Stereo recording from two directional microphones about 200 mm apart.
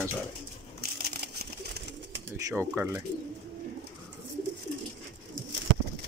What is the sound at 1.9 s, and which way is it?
Bird, 65° right (ahead or behind).